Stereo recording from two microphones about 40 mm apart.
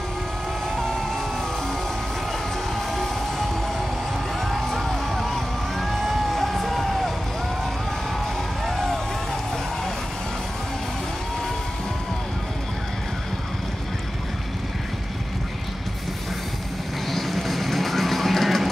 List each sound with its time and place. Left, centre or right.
4.4 s music: centre
8.6 s music: centre
17.1 s music: centre